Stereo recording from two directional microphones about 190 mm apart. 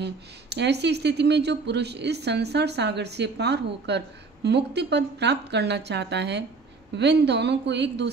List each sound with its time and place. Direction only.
0.0 s speech: 65° right (ahead or behind)